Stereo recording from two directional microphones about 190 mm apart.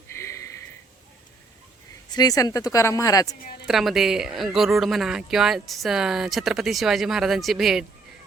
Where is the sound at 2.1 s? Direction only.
20° left (ahead or behind).